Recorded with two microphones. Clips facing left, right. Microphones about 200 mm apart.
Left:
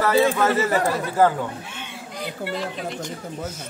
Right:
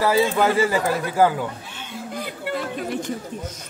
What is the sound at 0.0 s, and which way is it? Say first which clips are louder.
Speech: even; 10° right (ahead or behind).